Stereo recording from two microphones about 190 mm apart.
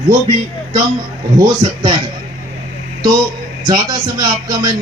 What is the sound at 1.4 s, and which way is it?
Speech, 25° right (ahead or behind).